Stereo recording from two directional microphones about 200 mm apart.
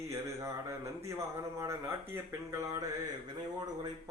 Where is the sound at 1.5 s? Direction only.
15° right (ahead or behind).